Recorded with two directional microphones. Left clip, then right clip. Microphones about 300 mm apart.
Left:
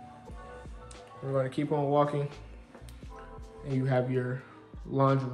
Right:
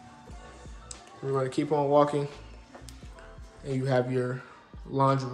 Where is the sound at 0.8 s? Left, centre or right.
Centre.